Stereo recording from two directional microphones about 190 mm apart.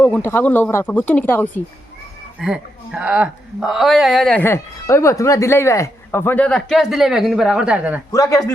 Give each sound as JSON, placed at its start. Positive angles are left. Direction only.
{"t": 0.0, "sound": "speech", "side_deg": 10}
{"t": 2.4, "sound": "speech", "side_deg": -5}
{"t": 8.1, "sound": "speech", "side_deg": 20}